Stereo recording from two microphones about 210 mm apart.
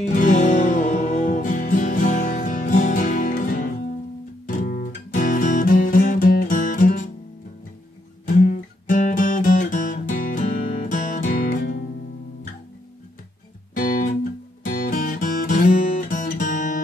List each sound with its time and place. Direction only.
0.0 s music: 35° left (ahead or behind)
8.4 s guitar: 40° left (ahead or behind)
13.7 s music: 40° left (ahead or behind)